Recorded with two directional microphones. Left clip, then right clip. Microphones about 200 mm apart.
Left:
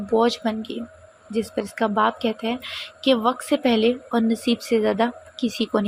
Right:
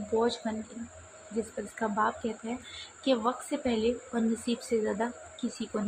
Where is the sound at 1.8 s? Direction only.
30° left (ahead or behind).